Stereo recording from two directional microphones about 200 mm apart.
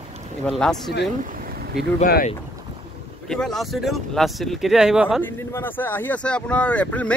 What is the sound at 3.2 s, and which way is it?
Speech, centre (ahead or behind).